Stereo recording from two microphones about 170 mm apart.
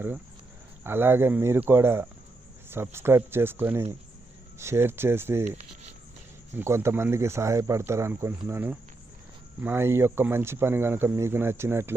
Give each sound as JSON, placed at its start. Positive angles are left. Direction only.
{"t": 0.9, "sound": "speech", "side_deg": -15}
{"t": 6.6, "sound": "speech", "side_deg": -15}